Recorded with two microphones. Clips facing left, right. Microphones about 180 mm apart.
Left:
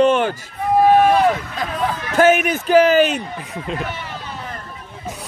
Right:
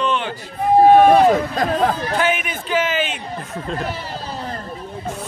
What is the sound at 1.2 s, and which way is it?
Speech, 40° right (ahead or behind).